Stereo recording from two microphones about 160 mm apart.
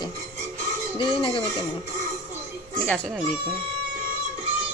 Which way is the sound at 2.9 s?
5° left (ahead or behind).